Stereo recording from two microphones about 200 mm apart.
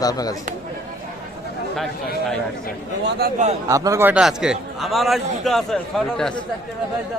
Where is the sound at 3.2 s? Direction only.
50° right (ahead or behind).